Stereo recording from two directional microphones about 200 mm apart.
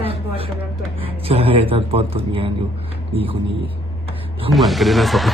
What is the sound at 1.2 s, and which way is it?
A man's voice, 30° right (ahead or behind).